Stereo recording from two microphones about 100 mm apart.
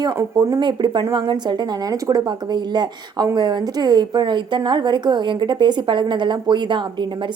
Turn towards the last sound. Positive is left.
turn(degrees=-50)  # may be behind; listen again after turning